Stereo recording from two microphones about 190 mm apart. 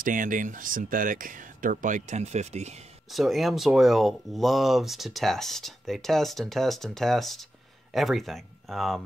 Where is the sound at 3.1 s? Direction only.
Centre (ahead or behind).